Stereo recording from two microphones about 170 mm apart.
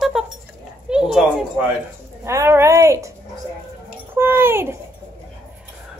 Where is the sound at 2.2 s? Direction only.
15° right (ahead or behind).